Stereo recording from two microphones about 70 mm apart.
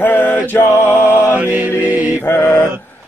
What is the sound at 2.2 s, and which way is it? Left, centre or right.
Music, left.